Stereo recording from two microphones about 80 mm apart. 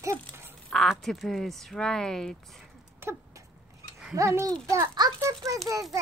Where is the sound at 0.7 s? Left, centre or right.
Centre.